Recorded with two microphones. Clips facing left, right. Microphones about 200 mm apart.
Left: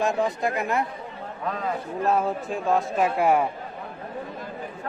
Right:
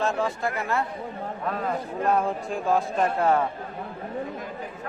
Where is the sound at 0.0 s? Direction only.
15° left (ahead or behind).